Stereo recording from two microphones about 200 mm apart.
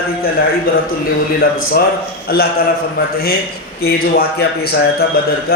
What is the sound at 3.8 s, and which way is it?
Speech, 50° left (ahead or behind).